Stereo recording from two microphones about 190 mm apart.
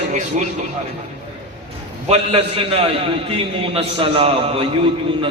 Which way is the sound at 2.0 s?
30° right (ahead or behind).